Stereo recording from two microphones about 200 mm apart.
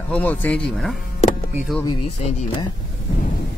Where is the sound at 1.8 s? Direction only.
25° left (ahead or behind).